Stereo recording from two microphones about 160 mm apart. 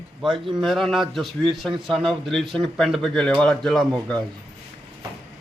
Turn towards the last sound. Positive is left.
turn(degrees=5)  # may be behind; listen again after turning